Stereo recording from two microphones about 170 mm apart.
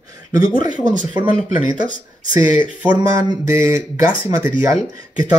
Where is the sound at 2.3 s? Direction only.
50° left (ahead or behind).